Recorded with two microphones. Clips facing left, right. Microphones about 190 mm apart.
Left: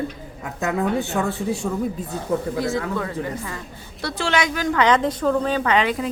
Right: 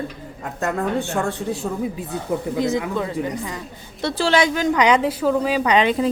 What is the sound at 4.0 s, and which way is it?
A woman's voice, 30° right (ahead or behind).